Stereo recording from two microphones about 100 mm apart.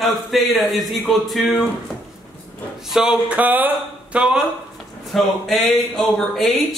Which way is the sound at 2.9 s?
5° right (ahead or behind).